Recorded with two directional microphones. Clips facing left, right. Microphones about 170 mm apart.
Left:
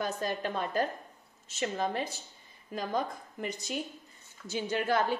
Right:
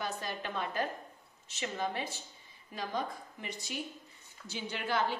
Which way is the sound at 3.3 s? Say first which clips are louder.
Left 7 dB; 40° left (ahead or behind).